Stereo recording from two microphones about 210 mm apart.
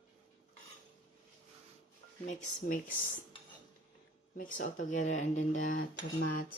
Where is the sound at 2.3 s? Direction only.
40° left (ahead or behind).